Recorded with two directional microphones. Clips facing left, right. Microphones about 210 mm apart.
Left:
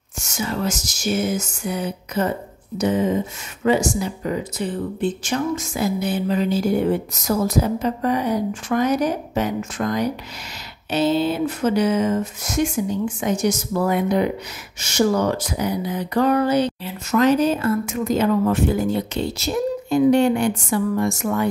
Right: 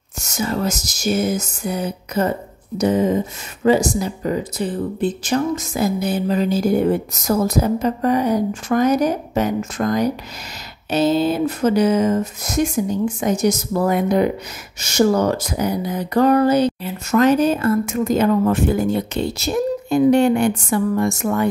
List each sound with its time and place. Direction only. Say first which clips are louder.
0.2 s speech: right 3 dB; 40° right (ahead or behind)
19.9 s speech: right 2 dB; 50° right (ahead or behind)